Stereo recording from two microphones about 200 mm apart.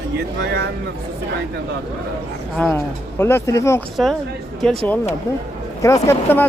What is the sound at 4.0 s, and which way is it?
Speech, centre (ahead or behind).